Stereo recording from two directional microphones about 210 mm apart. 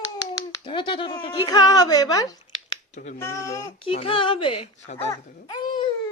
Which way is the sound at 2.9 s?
35° left (ahead or behind).